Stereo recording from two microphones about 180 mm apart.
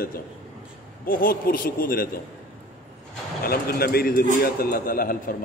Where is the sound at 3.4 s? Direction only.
55° left (ahead or behind).